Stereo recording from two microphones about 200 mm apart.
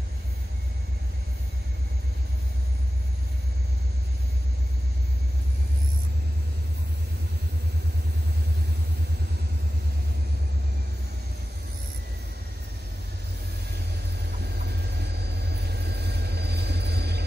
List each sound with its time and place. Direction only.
14.4 s vehicle: 55° right (ahead or behind)